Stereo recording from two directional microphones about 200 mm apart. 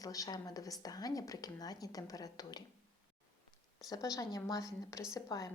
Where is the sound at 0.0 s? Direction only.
15° left (ahead or behind).